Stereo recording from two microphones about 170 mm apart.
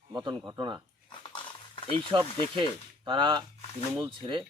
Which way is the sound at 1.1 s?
30° left (ahead or behind).